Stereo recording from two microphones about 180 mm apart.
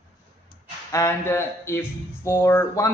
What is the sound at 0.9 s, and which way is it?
Speech, 15° left (ahead or behind).